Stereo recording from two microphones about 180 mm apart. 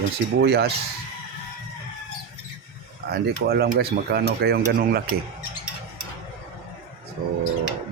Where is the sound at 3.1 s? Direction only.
60° right (ahead or behind).